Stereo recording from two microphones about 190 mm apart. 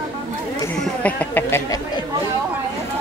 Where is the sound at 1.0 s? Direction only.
10° left (ahead or behind).